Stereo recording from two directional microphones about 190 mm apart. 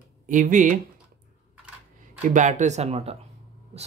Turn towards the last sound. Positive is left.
turn(degrees=-35)  # may be behind; listen again after turning